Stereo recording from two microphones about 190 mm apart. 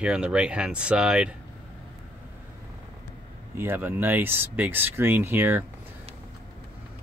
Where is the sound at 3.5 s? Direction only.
10° right (ahead or behind).